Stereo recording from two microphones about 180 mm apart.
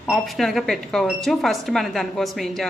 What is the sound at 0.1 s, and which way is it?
A woman's voice, centre (ahead or behind).